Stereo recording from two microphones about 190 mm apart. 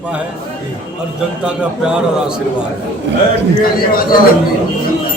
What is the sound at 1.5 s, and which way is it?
Speech, 5° right (ahead or behind).